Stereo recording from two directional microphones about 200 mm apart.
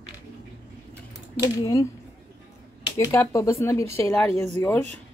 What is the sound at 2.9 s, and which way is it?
Speech, 15° left (ahead or behind).